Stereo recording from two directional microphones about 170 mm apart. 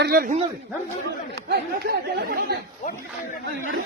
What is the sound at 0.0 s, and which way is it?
Speech, 65° right (ahead or behind).